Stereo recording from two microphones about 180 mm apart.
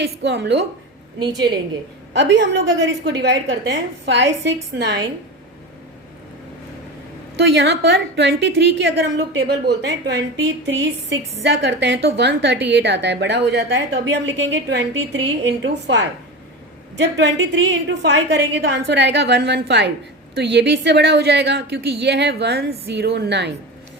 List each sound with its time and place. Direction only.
0.0 s a woman's voice: 75° right (ahead or behind)
1.2 s a woman's voice: 20° right (ahead or behind)
2.1 s a woman's voice: 85° right
7.3 s a woman's voice: 70° right (ahead or behind)
17.0 s a woman's voice: 75° right (ahead or behind)